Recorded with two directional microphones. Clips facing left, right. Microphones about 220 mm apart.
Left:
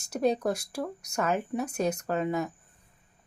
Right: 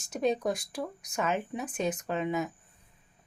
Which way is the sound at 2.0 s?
40° left (ahead or behind).